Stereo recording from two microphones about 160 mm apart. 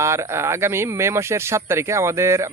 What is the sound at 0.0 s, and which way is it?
Speech, 15° right (ahead or behind).